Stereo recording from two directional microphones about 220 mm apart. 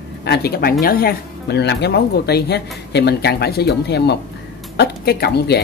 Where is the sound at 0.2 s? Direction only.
45° left (ahead or behind).